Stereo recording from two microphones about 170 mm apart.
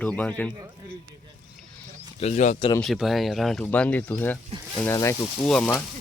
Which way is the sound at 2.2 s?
45° left (ahead or behind).